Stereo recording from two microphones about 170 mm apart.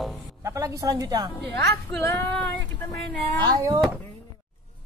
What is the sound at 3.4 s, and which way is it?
Speech, 25° right (ahead or behind).